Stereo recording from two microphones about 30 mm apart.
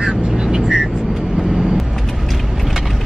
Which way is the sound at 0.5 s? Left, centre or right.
Right.